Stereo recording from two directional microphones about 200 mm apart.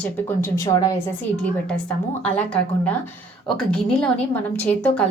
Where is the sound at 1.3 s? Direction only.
5° left (ahead or behind).